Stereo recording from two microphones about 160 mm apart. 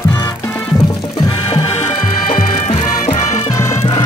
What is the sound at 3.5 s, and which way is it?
Music, 20° left (ahead or behind).